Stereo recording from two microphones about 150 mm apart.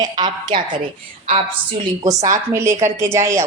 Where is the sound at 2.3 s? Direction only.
20° right (ahead or behind).